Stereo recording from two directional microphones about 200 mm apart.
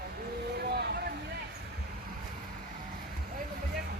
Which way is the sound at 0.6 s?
55° right (ahead or behind).